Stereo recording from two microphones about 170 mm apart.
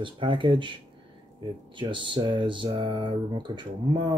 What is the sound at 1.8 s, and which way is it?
Speech, 30° right (ahead or behind).